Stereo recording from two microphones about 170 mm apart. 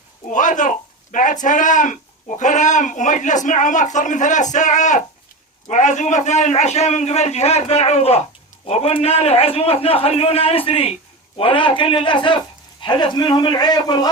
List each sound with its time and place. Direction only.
0.3 s a man's voice: 50° left (ahead or behind); by 14.1 s 25° left (ahead or behind)